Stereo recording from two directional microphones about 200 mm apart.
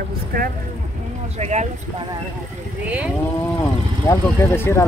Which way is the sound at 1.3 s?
35° right (ahead or behind).